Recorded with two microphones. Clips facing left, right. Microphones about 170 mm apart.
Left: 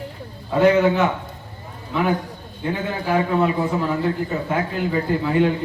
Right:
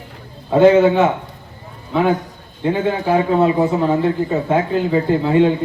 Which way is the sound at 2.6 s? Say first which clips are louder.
Right 6 dB; 25° right (ahead or behind).